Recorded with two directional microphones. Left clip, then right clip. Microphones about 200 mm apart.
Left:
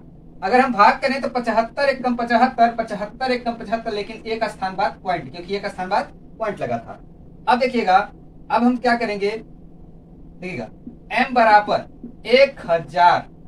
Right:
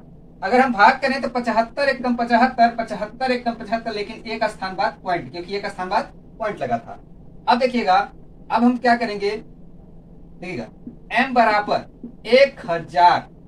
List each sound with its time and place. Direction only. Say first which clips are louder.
0.4 s speech: even; 15° left (ahead or behind)
7.4 s speech: even; 20° left (ahead or behind)
11.1 s speech: left 2 dB; 20° left (ahead or behind)